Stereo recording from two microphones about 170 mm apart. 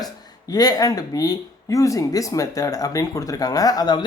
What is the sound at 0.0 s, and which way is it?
Speech, 20° left (ahead or behind).